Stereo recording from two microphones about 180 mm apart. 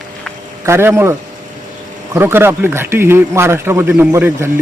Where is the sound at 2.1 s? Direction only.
15° right (ahead or behind).